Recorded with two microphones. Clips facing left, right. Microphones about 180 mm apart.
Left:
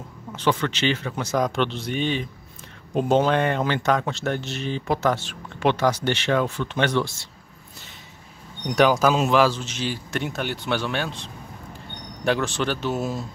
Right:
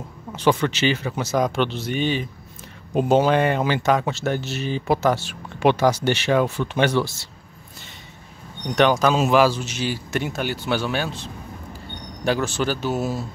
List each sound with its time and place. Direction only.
0.3 s a man's voice: 10° right (ahead or behind)
8.6 s a man's voice: 5° left (ahead or behind)
12.3 s a man's voice: 5° right (ahead or behind)